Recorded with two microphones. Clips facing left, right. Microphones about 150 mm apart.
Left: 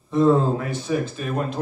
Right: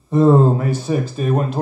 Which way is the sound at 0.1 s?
45° right (ahead or behind).